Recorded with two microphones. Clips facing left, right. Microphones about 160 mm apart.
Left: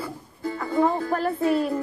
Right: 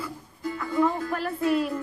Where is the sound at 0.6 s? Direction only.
25° left (ahead or behind).